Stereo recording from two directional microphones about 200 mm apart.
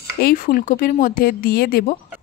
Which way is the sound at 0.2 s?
45° left (ahead or behind).